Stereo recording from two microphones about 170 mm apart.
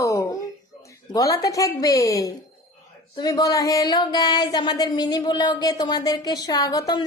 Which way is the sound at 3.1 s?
20° left (ahead or behind).